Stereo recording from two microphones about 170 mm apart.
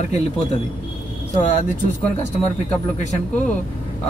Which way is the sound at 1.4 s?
50° left (ahead or behind).